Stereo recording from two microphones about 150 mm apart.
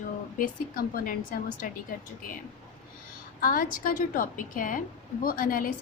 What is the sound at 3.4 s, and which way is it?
A woman's voice, 65° left (ahead or behind).